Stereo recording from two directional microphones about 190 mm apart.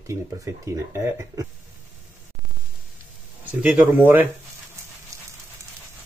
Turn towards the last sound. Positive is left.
turn(degrees=-15)  # may be behind; listen again after turning